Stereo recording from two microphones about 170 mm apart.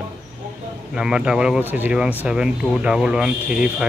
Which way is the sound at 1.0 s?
5° right (ahead or behind).